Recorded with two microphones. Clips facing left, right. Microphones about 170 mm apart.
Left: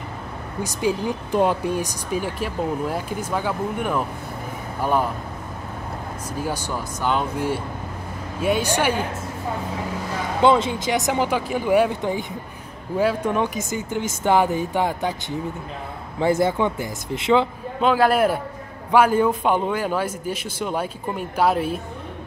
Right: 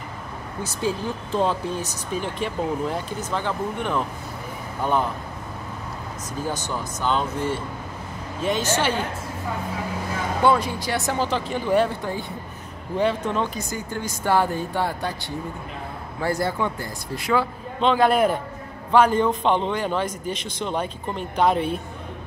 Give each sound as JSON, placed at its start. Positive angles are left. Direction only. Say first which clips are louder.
{"t": 0.6, "sound": "speech", "louder": "left 3 dB", "side_deg": 15}
{"t": 6.4, "sound": "speech", "louder": "left 1 dB", "side_deg": 10}
{"t": 10.4, "sound": "speech", "louder": "left 3 dB", "side_deg": 20}
{"t": 12.9, "sound": "speech", "louder": "left 2 dB", "side_deg": 5}
{"t": 17.7, "sound": "a man's voice", "louder": "left 1 dB", "side_deg": 5}